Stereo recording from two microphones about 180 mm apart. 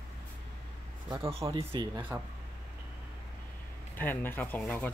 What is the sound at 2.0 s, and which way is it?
Speech, 10° right (ahead or behind).